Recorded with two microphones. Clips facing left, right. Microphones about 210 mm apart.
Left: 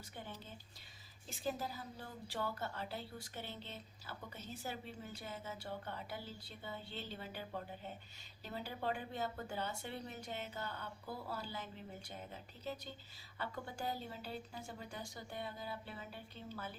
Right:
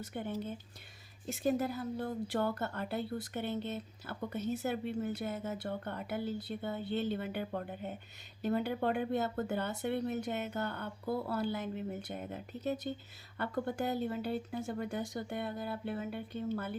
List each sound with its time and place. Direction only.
0.1 s a woman's voice: 60° right (ahead or behind)